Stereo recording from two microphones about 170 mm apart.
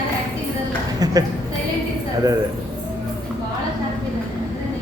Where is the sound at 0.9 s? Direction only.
20° right (ahead or behind).